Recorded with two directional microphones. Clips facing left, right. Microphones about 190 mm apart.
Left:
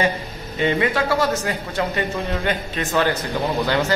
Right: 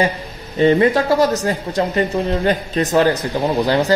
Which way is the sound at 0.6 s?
40° right (ahead or behind).